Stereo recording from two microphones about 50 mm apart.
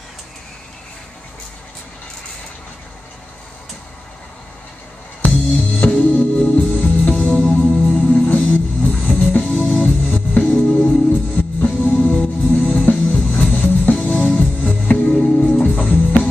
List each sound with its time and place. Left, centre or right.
5.3 s music: left